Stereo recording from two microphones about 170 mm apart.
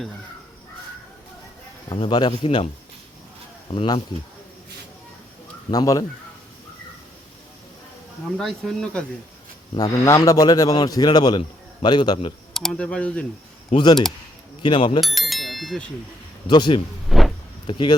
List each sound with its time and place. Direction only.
1.9 s a man's voice: 25° left (ahead or behind)
3.8 s speech: 30° left (ahead or behind)
5.7 s a man's voice: 20° left (ahead or behind)
8.4 s speech: centre (ahead or behind)
9.7 s a man's voice: 20° left (ahead or behind)
12.5 s speech: 5° left (ahead or behind)
13.7 s a man's voice: 25° left (ahead or behind)
15.0 s bicycle bell: centre (ahead or behind)
16.5 s a man's voice: 25° left (ahead or behind)
17.1 s a sound: centre (ahead or behind)
17.7 s a man's voice: 30° left (ahead or behind)